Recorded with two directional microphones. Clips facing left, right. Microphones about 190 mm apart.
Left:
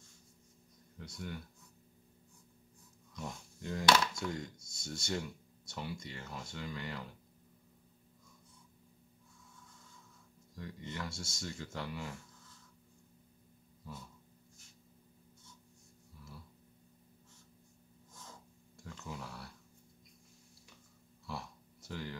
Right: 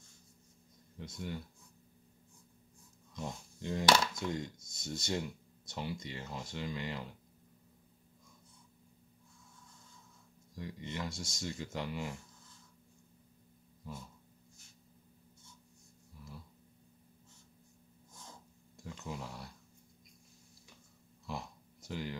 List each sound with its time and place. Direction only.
0.9 s speech: 25° right (ahead or behind)
3.2 s speech: 25° right (ahead or behind)
10.5 s speech: 20° right (ahead or behind)
13.9 s speech: 20° right (ahead or behind)
18.9 s a sound: 20° right (ahead or behind)
21.3 s a sound: 20° right (ahead or behind)